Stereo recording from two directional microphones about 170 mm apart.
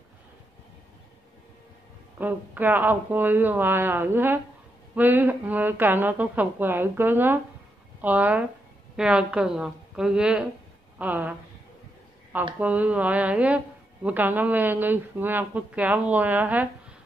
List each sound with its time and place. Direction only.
2.1 s a woman's voice: 10° right (ahead or behind)
12.5 s speech: 10° right (ahead or behind)